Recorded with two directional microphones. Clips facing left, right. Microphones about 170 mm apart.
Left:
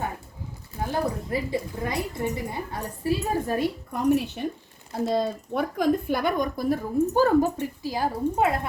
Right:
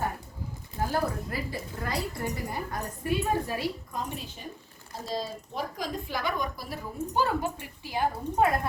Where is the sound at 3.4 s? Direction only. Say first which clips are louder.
Left 6 dB; 50° left (ahead or behind).